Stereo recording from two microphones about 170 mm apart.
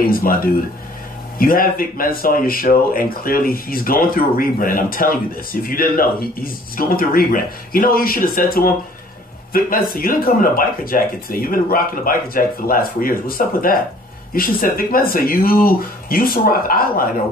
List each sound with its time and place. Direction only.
0.0 s speech: 60° left (ahead or behind)